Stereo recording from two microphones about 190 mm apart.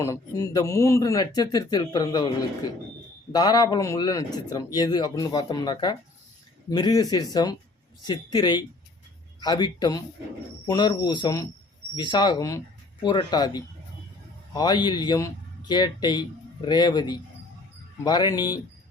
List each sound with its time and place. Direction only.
0.0 s speech: 15° left (ahead or behind)
3.3 s speech: 20° left (ahead or behind)